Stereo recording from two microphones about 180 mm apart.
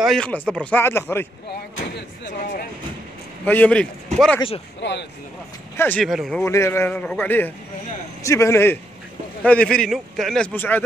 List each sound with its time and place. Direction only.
0.0 s a man's voice: 5° left (ahead or behind)
3.4 s a man's voice: 10° left (ahead or behind)
4.8 s speech: 80° left
5.8 s a man's voice: 10° left (ahead or behind)
6.0 s a man's voice: centre (ahead or behind)
6.4 s a man's voice: 15° left (ahead or behind)